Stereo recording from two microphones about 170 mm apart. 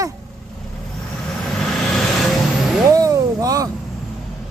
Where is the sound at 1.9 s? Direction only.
Centre (ahead or behind).